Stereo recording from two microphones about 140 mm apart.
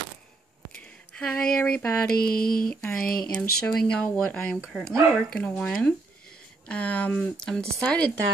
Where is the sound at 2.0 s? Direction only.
90° left.